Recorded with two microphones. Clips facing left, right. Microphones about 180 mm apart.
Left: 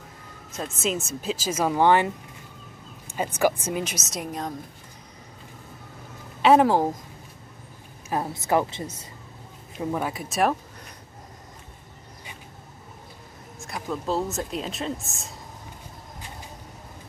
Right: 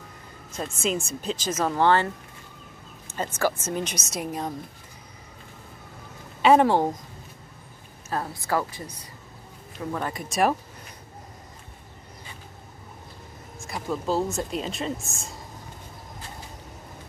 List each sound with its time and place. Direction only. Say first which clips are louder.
0.5 s speech: even; centre (ahead or behind)
3.3 s speech: left 3 dB; 15° left (ahead or behind); by 4.6 s 5° right (ahead or behind)
6.4 s speech: even; centre (ahead or behind)
8.1 s a woman's voice: left 3 dB; 20° left (ahead or behind)
9.9 s speech: right 1 dB; 5° left (ahead or behind)
13.6 s speech: right 1 dB; centre (ahead or behind)